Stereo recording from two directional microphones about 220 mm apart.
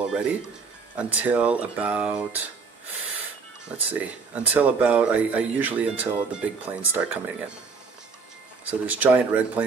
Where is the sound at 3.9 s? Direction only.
5° right (ahead or behind).